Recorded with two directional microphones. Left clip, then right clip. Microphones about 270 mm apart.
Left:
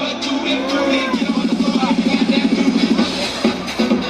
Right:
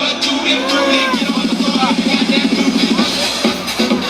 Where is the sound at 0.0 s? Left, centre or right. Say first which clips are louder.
Right 5 dB; centre.